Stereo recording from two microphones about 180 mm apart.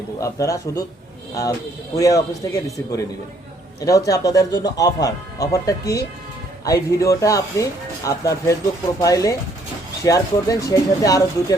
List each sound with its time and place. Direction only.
0.2 s speech: 20° left (ahead or behind)
2.0 s speech: 20° left (ahead or behind)